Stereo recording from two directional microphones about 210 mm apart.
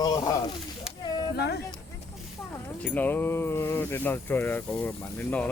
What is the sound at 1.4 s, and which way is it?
Speech, 50° left (ahead or behind).